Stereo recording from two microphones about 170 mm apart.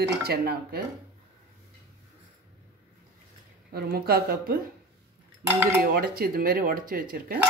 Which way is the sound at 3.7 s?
65° right (ahead or behind).